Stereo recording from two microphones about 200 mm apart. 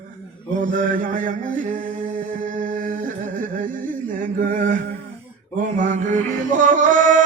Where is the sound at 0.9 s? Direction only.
40° right (ahead or behind).